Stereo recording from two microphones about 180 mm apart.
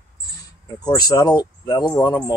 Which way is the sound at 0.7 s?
20° left (ahead or behind).